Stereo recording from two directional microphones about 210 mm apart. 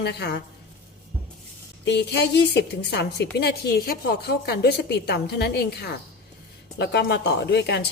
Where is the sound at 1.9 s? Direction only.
55° left (ahead or behind).